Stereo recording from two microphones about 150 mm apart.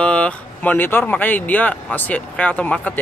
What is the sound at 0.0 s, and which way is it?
Speech, 10° left (ahead or behind).